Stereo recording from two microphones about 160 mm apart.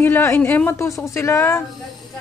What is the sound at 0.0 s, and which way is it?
Speech, 15° left (ahead or behind).